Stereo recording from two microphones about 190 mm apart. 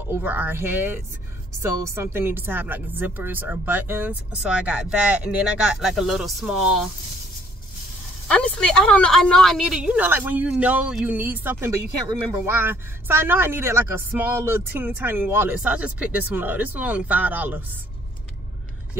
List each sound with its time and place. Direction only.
0.0 s a woman's voice: 10° right (ahead or behind)
8.3 s a woman's voice: 5° left (ahead or behind)